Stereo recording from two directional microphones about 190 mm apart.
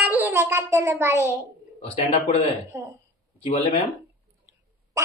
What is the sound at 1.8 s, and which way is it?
Speech, 30° left (ahead or behind).